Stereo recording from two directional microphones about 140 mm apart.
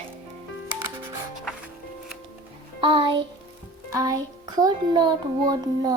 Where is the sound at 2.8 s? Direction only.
35° right (ahead or behind).